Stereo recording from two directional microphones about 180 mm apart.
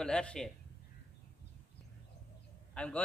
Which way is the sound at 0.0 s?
5° left (ahead or behind).